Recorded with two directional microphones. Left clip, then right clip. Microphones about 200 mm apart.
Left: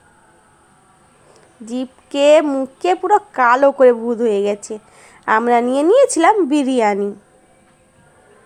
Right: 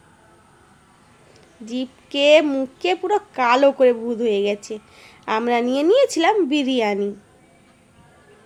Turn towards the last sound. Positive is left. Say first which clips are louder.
# left 5 dB
turn(degrees=20)  # may be behind; listen again after turning